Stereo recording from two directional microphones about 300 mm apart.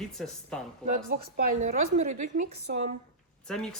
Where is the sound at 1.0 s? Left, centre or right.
Right.